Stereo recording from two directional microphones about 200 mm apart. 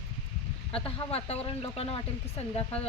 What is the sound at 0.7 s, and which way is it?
Speech, 30° left (ahead or behind).